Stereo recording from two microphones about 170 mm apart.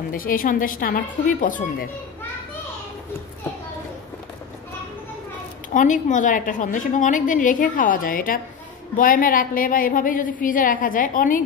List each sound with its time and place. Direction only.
0.1 s a woman's voice: 55° left (ahead or behind)
5.7 s a woman's voice: 50° left (ahead or behind)